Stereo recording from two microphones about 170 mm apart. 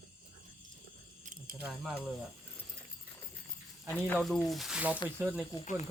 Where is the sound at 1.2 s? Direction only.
50° right (ahead or behind).